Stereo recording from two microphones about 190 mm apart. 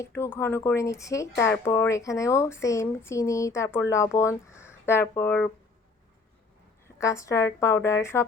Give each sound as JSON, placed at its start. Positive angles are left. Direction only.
{"t": 0.0, "sound": "speech", "side_deg": 10}
{"t": 6.8, "sound": "speech", "side_deg": 15}